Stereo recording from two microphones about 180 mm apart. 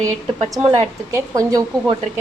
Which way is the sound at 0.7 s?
15° right (ahead or behind).